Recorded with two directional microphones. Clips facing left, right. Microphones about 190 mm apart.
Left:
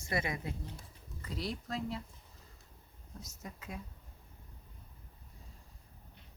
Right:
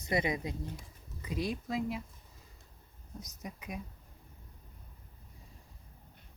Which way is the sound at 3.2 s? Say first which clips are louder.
Right 3 dB; 15° right (ahead or behind).